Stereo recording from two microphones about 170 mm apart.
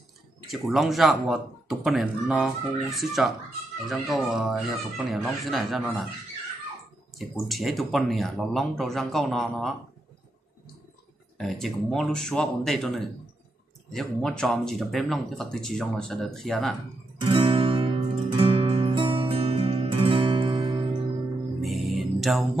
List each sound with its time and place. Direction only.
0.5 s speech: centre (ahead or behind)
7.4 s speech: centre (ahead or behind)
11.3 s speech: centre (ahead or behind)
17.2 s music: 30° right (ahead or behind)
21.6 s music: centre (ahead or behind)